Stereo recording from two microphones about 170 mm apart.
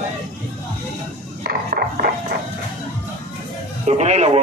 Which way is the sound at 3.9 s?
40° right (ahead or behind).